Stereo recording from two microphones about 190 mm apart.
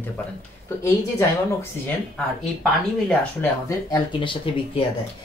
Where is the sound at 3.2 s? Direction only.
15° left (ahead or behind).